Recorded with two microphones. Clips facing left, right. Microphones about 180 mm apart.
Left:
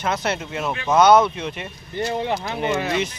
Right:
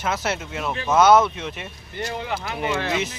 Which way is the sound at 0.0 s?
5° right (ahead or behind).